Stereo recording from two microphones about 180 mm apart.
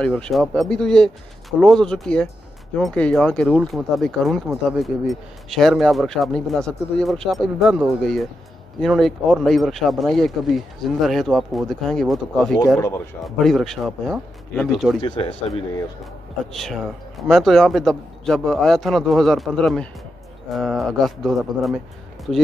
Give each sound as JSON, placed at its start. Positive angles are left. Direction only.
{"t": 0.0, "sound": "speech", "side_deg": 0}
{"t": 15.0, "sound": "speech", "side_deg": 30}
{"t": 16.5, "sound": "speech", "side_deg": 0}